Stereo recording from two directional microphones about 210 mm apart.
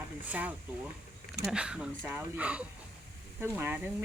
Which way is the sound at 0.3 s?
5° right (ahead or behind).